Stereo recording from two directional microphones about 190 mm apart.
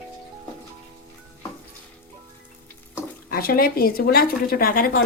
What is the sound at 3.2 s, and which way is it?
Speech, 50° left (ahead or behind).